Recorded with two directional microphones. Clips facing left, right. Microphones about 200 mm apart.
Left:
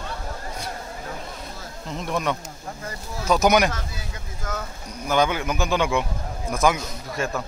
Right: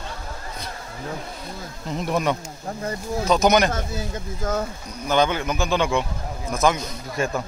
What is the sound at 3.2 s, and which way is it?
Speech, 10° left (ahead or behind).